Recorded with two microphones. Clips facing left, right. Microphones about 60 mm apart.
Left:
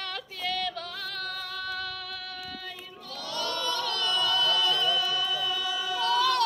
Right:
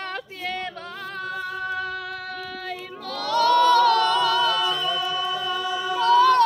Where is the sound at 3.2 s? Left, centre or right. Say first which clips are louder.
Right 15 dB; right.